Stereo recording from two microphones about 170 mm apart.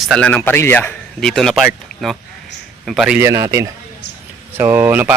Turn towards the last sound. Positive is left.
turn(degrees=-10)  # may be behind; listen again after turning